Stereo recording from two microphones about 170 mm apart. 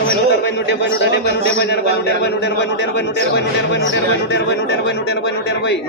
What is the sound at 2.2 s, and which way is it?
A man's voice, 75° left (ahead or behind).